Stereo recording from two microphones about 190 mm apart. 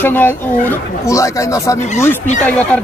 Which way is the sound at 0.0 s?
10° left (ahead or behind).